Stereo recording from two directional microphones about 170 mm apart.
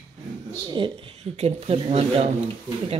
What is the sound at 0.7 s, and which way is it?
Speech, 30° right (ahead or behind).